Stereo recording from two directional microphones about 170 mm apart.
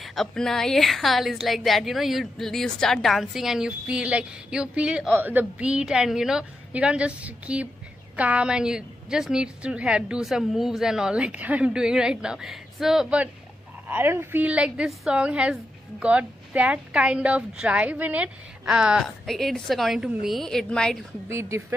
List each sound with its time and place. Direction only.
0.0 s a woman's voice: centre (ahead or behind)
21.3 s a woman's voice: 15° right (ahead or behind)